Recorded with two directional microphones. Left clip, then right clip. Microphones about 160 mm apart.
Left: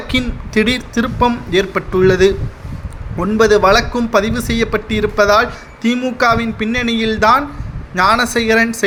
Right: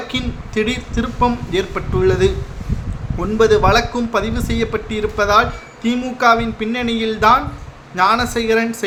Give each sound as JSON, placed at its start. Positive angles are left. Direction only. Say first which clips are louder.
{"t": 0.1, "sound": "speech", "louder": "left 10 dB", "side_deg": 35}